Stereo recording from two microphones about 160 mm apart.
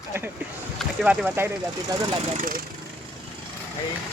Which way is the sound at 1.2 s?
15° right (ahead or behind).